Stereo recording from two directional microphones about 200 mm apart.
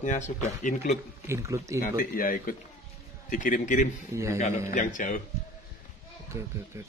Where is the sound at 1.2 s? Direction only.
15° right (ahead or behind).